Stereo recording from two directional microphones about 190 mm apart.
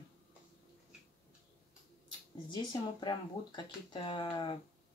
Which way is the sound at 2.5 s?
25° left (ahead or behind).